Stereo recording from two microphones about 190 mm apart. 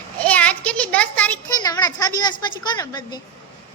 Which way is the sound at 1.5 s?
20° left (ahead or behind).